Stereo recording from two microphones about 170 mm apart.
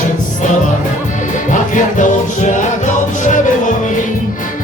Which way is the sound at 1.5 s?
50° left (ahead or behind).